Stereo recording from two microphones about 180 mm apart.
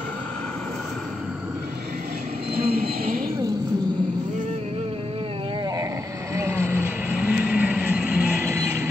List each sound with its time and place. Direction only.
2.5 s train: 60° right (ahead or behind)
6.3 s train: 15° right (ahead or behind)